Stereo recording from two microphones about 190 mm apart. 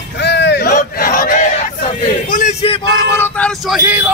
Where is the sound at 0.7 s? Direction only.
45° left (ahead or behind).